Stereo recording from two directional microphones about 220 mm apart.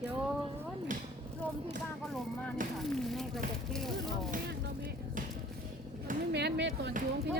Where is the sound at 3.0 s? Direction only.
Centre (ahead or behind).